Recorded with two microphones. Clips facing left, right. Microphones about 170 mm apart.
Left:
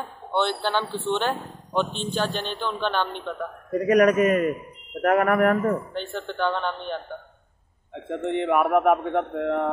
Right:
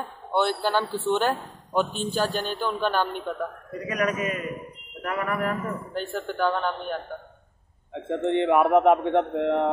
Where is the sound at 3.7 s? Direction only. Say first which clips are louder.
Left 10 dB; 45° left (ahead or behind).